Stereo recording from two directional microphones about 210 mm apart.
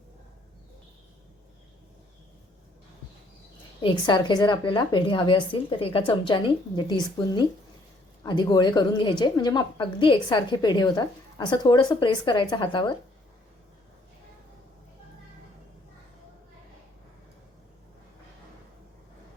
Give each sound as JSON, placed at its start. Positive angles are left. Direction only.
{"t": 3.8, "sound": "a woman's voice", "side_deg": 20}